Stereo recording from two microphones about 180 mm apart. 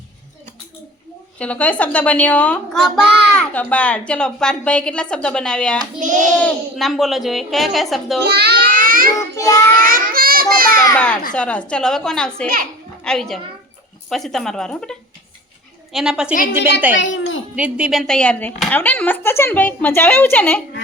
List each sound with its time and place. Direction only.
1.4 s speech: 5° left (ahead or behind)
3.0 s a child's voice: 70° right (ahead or behind)
3.3 s a woman's voice: 5° left (ahead or behind)
6.0 s a child's voice: 45° right (ahead or behind)
6.3 s a woman's voice: centre (ahead or behind)
8.2 s a sound: 65° right (ahead or behind)
9.1 s child singing: 20° left (ahead or behind)
9.7 s a sound: 50° right (ahead or behind)
10.9 s a woman's voice: 5° left (ahead or behind)
17.0 s a child's voice: 90° left
17.5 s speech: 5° right (ahead or behind); by 20.6 s 10° left (ahead or behind)